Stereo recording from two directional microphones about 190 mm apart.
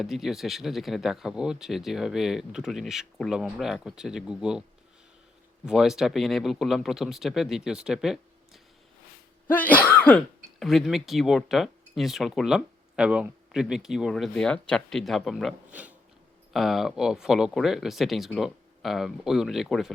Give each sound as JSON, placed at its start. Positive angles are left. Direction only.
{"t": 0.0, "sound": "speech", "side_deg": 0}
{"t": 5.6, "sound": "speech", "side_deg": -5}
{"t": 9.5, "sound": "cough", "side_deg": 10}
{"t": 10.6, "sound": "speech", "side_deg": 0}